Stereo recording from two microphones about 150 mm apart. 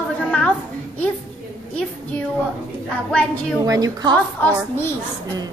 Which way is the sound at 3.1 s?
10° left (ahead or behind).